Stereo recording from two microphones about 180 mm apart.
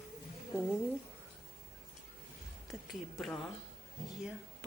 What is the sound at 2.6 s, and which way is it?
Speech, centre (ahead or behind).